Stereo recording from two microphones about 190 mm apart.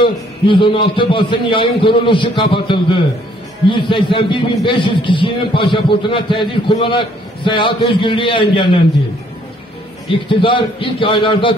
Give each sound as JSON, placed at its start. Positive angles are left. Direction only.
{"t": 0.0, "sound": "speech", "side_deg": 25}
{"t": 10.4, "sound": "speech", "side_deg": 25}